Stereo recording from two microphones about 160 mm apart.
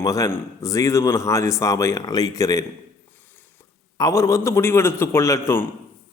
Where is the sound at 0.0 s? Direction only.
20° left (ahead or behind).